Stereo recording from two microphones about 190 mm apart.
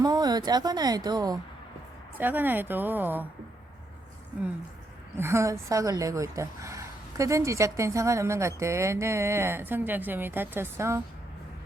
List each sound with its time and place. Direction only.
0.0 s speech: 20° right (ahead or behind)
2.1 s speech: 10° right (ahead or behind)
5.1 s speech: 15° right (ahead or behind)